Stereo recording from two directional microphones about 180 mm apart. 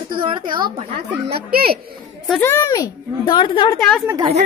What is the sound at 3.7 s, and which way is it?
Speech, centre (ahead or behind).